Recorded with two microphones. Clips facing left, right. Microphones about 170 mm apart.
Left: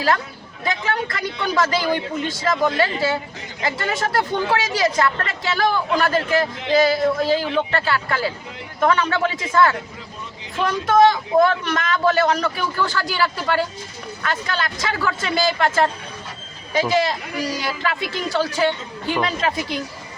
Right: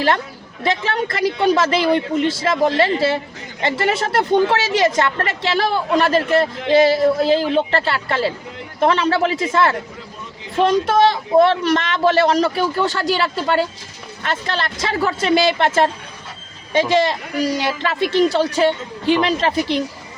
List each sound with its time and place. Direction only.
0.6 s a woman's voice: 30° right (ahead or behind)
16.9 s a woman's voice: 25° right (ahead or behind)